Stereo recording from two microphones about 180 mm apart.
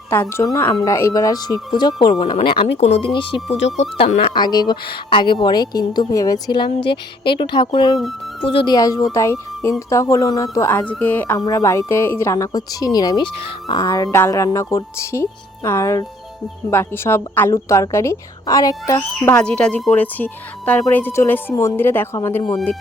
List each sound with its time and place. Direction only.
0.1 s a woman's voice: 15° left (ahead or behind)
2.1 s a woman's voice: 35° left (ahead or behind); by 19.4 s 15° left (ahead or behind)
19.4 s a woman's voice: 5° left (ahead or behind)
22.5 s speech: centre (ahead or behind)